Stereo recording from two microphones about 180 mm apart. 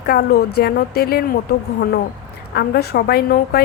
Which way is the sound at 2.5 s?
60° left (ahead or behind).